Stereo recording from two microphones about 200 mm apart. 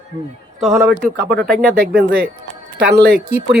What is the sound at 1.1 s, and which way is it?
Speech, 55° right (ahead or behind).